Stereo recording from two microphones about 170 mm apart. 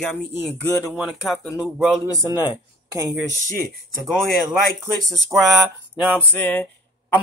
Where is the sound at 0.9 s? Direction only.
Centre (ahead or behind).